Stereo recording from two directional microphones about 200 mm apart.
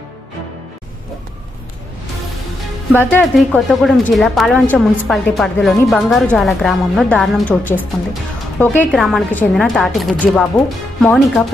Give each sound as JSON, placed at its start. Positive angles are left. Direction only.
{"t": 3.0, "sound": "speech", "side_deg": 5}